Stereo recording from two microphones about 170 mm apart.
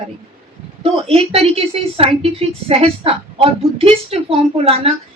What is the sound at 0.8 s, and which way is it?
A woman's voice, 35° right (ahead or behind).